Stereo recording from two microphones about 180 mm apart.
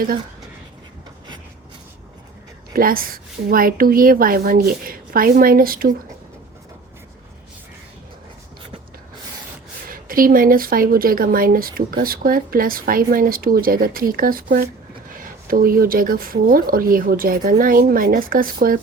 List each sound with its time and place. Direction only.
2.7 s speech: 55° right (ahead or behind)
9.9 s speech: 50° right (ahead or behind)